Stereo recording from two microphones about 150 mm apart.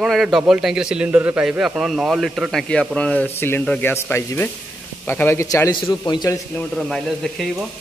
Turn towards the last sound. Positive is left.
turn(degrees=0)  # may be behind; listen again after turning